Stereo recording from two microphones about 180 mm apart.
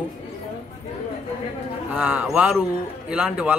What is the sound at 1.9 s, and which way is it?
Speech, 10° right (ahead or behind).